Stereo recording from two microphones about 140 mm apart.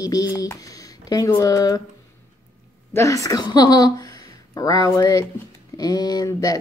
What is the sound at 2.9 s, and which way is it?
Speech, 25° left (ahead or behind).